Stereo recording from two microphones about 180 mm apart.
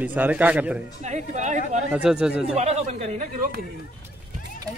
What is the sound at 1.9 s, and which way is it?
Speech, 5° right (ahead or behind).